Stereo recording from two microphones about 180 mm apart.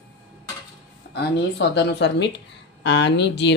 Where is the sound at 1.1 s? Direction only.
65° left (ahead or behind).